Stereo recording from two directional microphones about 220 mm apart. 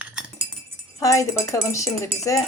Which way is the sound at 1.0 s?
15° left (ahead or behind).